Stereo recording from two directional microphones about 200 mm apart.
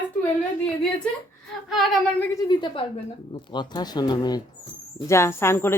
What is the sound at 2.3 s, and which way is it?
Speech, 20° left (ahead or behind).